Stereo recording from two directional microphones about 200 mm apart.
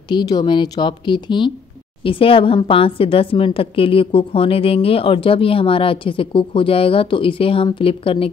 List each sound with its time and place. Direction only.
0.1 s a woman's voice: 20° left (ahead or behind)